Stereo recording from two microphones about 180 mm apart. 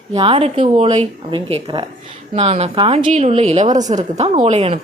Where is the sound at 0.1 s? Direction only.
30° right (ahead or behind).